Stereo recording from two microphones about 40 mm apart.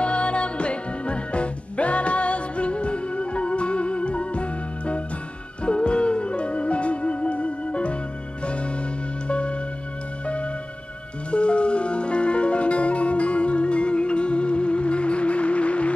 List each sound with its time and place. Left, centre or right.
0.0 s music: left